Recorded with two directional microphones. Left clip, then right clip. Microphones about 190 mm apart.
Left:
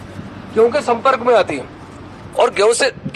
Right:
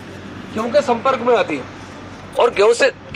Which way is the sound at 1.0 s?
30° left (ahead or behind).